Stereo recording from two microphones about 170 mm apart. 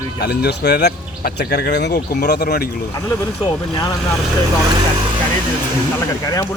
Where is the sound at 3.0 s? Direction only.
20° left (ahead or behind).